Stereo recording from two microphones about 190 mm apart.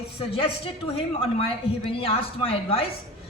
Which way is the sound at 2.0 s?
30° left (ahead or behind).